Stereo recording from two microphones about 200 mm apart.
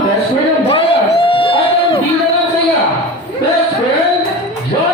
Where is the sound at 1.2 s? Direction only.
25° left (ahead or behind).